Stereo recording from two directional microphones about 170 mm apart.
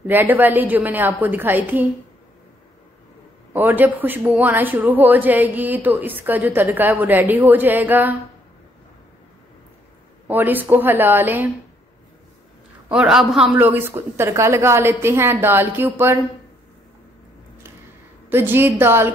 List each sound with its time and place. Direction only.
0.0 s a woman's voice: 10° right (ahead or behind)
3.5 s a woman's voice: 10° right (ahead or behind)
10.2 s a woman's voice: 10° right (ahead or behind)
12.8 s a woman's voice: 5° right (ahead or behind)
18.3 s a woman's voice: 10° right (ahead or behind)